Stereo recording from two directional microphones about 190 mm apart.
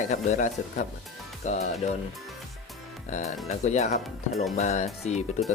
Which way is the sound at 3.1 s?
35° left (ahead or behind).